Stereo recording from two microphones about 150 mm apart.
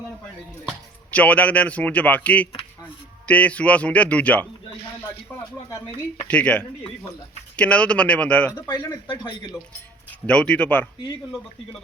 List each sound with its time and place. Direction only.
1.1 s speech: 10° left (ahead or behind)
6.2 s speech: 10° left (ahead or behind)
8.6 s speech: 25° left (ahead or behind)
10.2 s speech: 5° left (ahead or behind)